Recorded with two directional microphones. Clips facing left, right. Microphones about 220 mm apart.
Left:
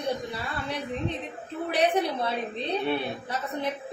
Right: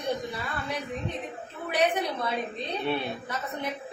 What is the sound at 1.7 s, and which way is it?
A woman's voice, 30° left (ahead or behind).